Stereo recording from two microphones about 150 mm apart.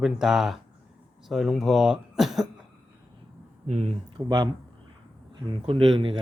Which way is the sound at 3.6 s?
50° right (ahead or behind).